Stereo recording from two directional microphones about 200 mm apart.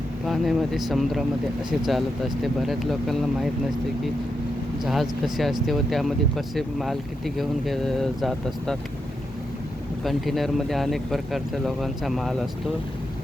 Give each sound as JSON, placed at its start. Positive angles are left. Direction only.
{"t": 0.3, "sound": "speech", "side_deg": 0}
{"t": 4.8, "sound": "speech", "side_deg": 0}
{"t": 10.0, "sound": "speech", "side_deg": 0}